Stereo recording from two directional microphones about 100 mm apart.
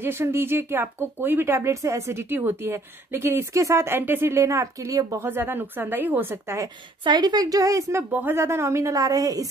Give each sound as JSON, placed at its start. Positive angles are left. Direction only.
{"t": 0.0, "sound": "speech", "side_deg": -25}
{"t": 5.3, "sound": "speech", "side_deg": -20}
{"t": 7.1, "sound": "a woman's voice", "side_deg": -45}
{"t": 8.1, "sound": "speech", "side_deg": -20}